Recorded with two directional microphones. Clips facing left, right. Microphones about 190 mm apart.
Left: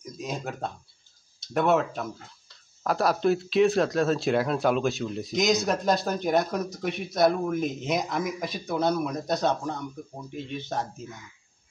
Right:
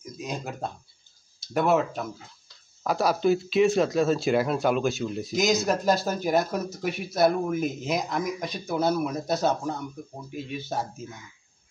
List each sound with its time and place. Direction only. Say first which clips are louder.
0.0 s speech: even; centre (ahead or behind)